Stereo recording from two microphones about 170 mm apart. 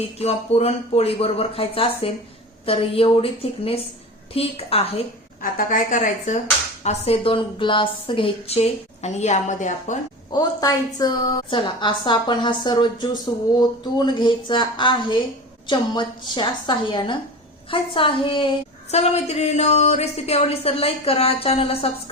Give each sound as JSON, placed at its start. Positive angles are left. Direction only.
{"t": 0.2, "sound": "a woman's voice", "side_deg": 35}
{"t": 5.4, "sound": "a woman's voice", "side_deg": 55}
{"t": 6.8, "sound": "a woman's voice", "side_deg": 35}
{"t": 10.3, "sound": "a woman's voice", "side_deg": 20}